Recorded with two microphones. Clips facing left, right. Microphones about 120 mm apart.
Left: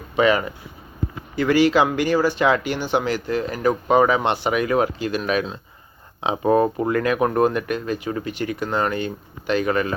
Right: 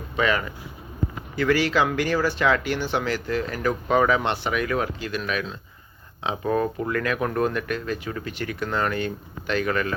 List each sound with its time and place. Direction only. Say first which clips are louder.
0.2 s speech: left 5 dB; 15° left (ahead or behind)
3.0 s speech: left 3 dB; 15° left (ahead or behind)
3.9 s speech: left 3 dB; 10° left (ahead or behind)